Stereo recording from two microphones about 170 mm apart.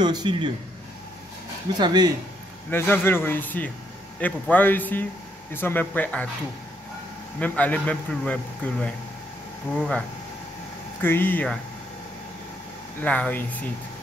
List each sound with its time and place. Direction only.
0.0 s speech: 25° right (ahead or behind)
1.8 s speech: 25° right (ahead or behind)
2.7 s a man's voice: 15° left (ahead or behind)
7.3 s a man's voice: 10° left (ahead or behind)
13.0 s a man's voice: 10° left (ahead or behind)